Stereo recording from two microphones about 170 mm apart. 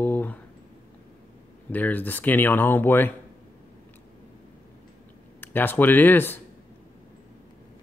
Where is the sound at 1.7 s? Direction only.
10° left (ahead or behind).